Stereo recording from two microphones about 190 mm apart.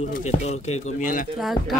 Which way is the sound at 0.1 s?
35° left (ahead or behind).